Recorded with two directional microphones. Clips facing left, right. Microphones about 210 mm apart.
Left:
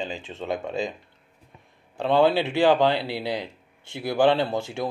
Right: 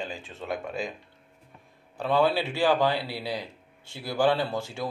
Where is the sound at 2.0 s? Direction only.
25° left (ahead or behind).